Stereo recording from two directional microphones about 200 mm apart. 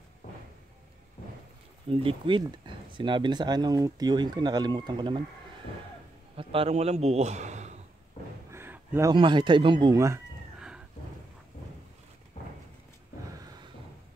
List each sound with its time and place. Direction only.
1.9 s speech: 25° right (ahead or behind)
6.3 s a man's voice: 30° right (ahead or behind)
8.5 s a sound: 10° right (ahead or behind)
9.1 s speech: 25° right (ahead or behind)